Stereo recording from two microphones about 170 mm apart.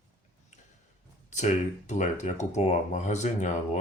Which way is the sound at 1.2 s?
45° left (ahead or behind).